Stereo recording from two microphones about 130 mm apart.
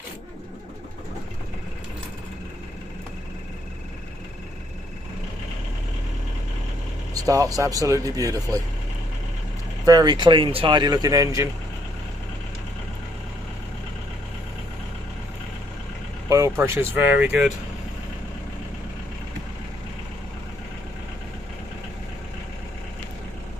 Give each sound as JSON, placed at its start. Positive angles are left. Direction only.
{"t": 7.2, "sound": "speech", "side_deg": -25}
{"t": 9.8, "sound": "speech", "side_deg": -30}
{"t": 16.3, "sound": "speech", "side_deg": -25}